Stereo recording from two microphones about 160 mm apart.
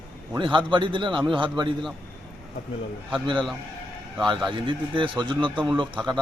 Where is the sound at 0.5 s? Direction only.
30° right (ahead or behind).